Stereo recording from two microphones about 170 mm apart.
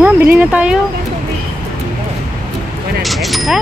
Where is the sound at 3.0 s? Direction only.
Centre (ahead or behind).